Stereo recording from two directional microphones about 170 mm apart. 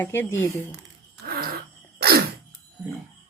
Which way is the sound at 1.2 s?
60° right (ahead or behind).